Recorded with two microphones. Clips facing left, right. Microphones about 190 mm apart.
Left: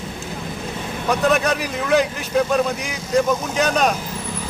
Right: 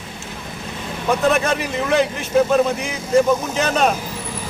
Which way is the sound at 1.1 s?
Centre (ahead or behind).